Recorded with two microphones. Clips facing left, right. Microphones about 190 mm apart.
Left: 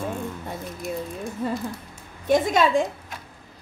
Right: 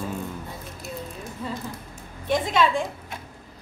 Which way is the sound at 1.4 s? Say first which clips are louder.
Left 5 dB; 50° left (ahead or behind).